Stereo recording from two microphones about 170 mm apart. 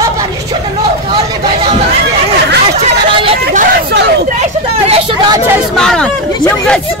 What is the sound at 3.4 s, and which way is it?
Hubbub, 50° right (ahead or behind).